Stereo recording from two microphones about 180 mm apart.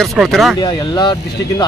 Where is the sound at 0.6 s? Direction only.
25° left (ahead or behind).